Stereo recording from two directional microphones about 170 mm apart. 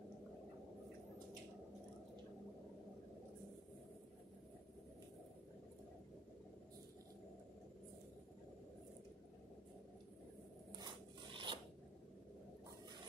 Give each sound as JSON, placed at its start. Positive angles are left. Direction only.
{"t": 10.8, "sound": "dog", "side_deg": -30}